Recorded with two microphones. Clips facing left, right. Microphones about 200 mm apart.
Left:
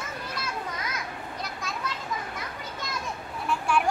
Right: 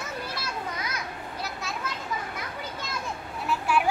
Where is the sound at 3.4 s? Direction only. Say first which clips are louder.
Even; 5° right (ahead or behind).